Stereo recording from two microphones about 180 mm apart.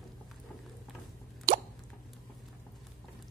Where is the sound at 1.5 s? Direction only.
50° right (ahead or behind).